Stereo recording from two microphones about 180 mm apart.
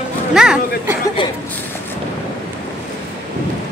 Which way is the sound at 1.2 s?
25° left (ahead or behind).